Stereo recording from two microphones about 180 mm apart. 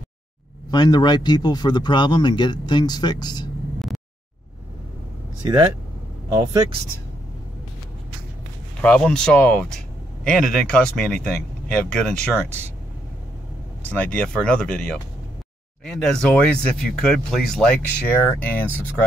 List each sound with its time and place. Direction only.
0.7 s speech: 25° left (ahead or behind)
6.3 s speech: 20° right (ahead or behind)
8.8 s speech: 5° left (ahead or behind)
12.4 s speech: 10° right (ahead or behind)
13.8 s speech: 10° left (ahead or behind)